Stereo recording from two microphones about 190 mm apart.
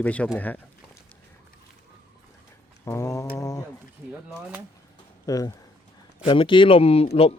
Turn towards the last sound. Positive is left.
turn(degrees=30)  # may be behind; listen again after turning